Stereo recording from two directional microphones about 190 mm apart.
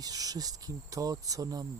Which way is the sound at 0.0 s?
20° right (ahead or behind).